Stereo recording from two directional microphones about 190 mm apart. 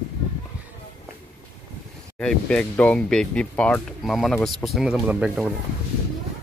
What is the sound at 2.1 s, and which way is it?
Speech, 5° left (ahead or behind).